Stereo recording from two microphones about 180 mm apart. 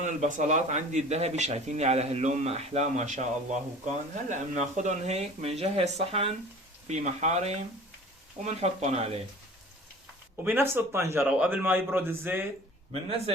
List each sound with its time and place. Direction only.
0.0 s speech: 40° right (ahead or behind)
10.4 s a man's voice: 10° right (ahead or behind)
12.9 s speech: 30° right (ahead or behind)